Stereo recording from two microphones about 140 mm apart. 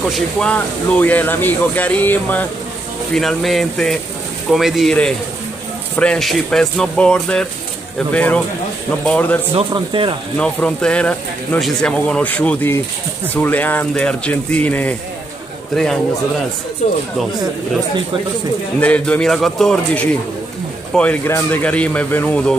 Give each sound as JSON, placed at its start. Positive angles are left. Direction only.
{"t": 0.1, "sound": "speech", "side_deg": 5}
{"t": 3.2, "sound": "speech", "side_deg": 0}
{"t": 5.9, "sound": "speech", "side_deg": 5}
{"t": 9.6, "sound": "speech", "side_deg": -40}
{"t": 10.3, "sound": "speech", "side_deg": 5}
{"t": 18.8, "sound": "speech", "side_deg": 10}